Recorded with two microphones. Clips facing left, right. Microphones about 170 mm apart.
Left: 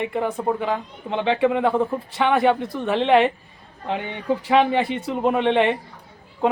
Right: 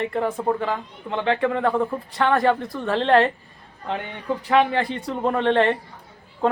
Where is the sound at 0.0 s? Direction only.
5° left (ahead or behind).